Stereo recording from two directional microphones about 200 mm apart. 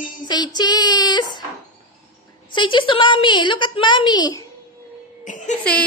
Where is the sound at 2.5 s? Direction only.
25° left (ahead or behind).